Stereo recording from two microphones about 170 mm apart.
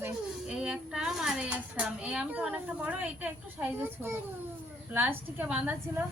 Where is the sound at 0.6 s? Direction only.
5° right (ahead or behind).